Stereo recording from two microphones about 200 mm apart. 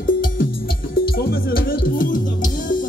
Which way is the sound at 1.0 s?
50° left (ahead or behind).